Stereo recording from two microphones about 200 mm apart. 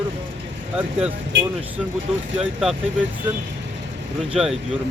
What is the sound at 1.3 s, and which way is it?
Speech, 60° right (ahead or behind).